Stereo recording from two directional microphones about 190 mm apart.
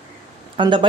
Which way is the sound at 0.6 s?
25° right (ahead or behind).